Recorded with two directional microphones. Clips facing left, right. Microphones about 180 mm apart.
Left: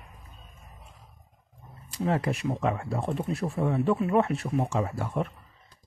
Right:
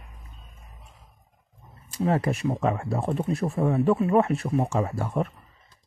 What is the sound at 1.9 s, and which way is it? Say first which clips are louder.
Speech: right 3 dB; 40° right (ahead or behind).